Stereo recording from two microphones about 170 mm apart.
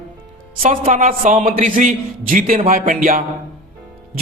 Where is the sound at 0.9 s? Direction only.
50° right (ahead or behind).